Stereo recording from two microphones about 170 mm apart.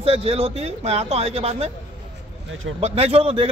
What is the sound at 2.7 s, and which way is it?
Speech, 35° right (ahead or behind).